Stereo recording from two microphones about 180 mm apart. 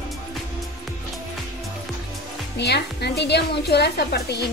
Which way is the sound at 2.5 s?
70° left (ahead or behind).